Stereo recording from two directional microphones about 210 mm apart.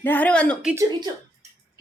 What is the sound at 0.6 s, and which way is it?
Speech, 15° right (ahead or behind).